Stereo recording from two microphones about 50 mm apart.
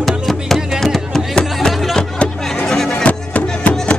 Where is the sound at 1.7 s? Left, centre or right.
Centre.